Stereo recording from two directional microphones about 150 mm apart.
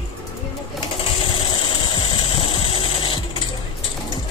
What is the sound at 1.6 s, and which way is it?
Engine, 35° left (ahead or behind).